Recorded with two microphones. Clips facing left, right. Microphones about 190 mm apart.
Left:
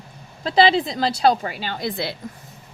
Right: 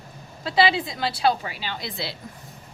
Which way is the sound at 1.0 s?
45° left (ahead or behind).